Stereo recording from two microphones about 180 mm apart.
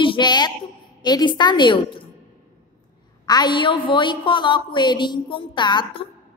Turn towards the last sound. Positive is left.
turn(degrees=25)  # may be behind; listen again after turning